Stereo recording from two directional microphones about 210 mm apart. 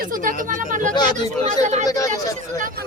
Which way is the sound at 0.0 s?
40° right (ahead or behind).